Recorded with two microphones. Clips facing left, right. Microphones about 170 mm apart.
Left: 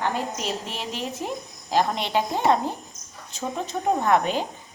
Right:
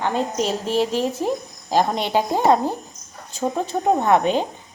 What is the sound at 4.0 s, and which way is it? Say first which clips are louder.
Speech: right 3 dB; 25° right (ahead or behind).